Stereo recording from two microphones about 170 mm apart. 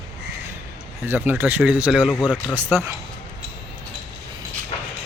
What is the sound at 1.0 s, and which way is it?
Speech, 10° right (ahead or behind).